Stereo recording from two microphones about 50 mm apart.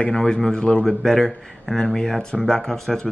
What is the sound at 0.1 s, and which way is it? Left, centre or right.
Speech, centre.